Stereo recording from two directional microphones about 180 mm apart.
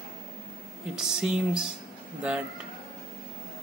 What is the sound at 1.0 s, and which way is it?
Speech, 5° right (ahead or behind).